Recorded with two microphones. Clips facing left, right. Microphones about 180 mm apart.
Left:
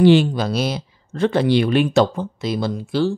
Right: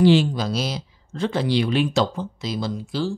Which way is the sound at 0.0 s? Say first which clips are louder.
Left 3 dB; 60° left (ahead or behind).